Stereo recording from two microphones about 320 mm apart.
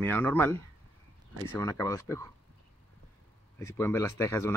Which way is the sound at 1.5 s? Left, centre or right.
Centre.